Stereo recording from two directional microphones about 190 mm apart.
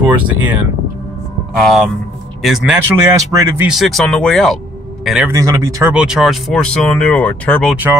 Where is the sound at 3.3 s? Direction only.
15° right (ahead or behind).